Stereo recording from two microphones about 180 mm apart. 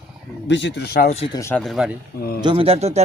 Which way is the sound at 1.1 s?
35° left (ahead or behind).